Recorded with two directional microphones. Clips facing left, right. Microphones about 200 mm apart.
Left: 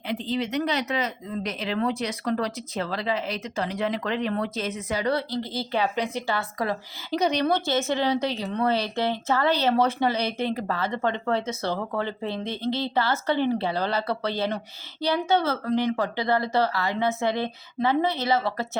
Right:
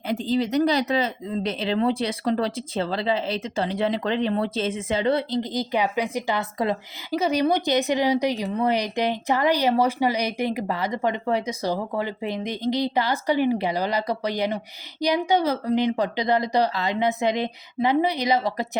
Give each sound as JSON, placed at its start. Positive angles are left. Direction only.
{"t": 0.1, "sound": "speech", "side_deg": -40}
{"t": 7.1, "sound": "speech", "side_deg": -5}